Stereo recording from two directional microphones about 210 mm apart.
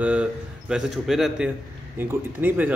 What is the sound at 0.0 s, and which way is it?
A man's voice, 5° right (ahead or behind).